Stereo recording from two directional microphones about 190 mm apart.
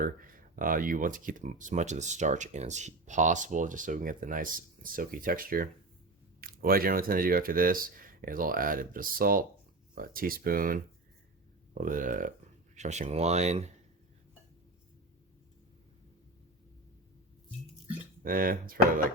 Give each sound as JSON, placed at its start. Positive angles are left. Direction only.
{"t": 0.0, "sound": "speech", "side_deg": -45}
{"t": 18.2, "sound": "speech", "side_deg": -50}